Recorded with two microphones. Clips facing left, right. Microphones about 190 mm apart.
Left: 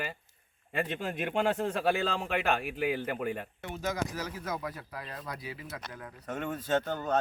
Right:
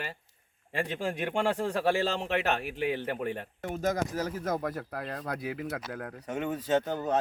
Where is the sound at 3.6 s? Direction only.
45° right (ahead or behind).